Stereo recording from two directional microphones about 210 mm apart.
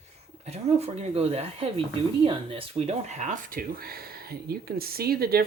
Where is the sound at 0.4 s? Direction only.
30° right (ahead or behind).